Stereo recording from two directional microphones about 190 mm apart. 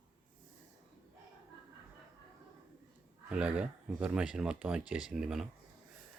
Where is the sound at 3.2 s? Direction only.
5° right (ahead or behind).